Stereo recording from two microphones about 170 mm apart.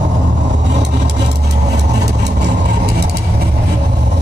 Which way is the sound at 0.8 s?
90° right.